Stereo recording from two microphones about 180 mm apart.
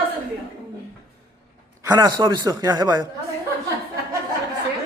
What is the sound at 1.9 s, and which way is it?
A man's voice, 25° right (ahead or behind).